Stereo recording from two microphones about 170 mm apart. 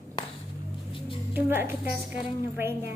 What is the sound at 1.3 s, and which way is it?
Speech, 10° right (ahead or behind).